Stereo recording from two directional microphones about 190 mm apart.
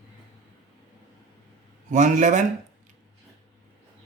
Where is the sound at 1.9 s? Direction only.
40° right (ahead or behind).